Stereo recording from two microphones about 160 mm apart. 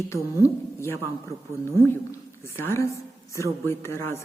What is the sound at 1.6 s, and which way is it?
A woman's voice, 15° left (ahead or behind).